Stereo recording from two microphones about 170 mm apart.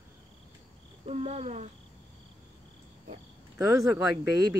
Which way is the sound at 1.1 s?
40° right (ahead or behind).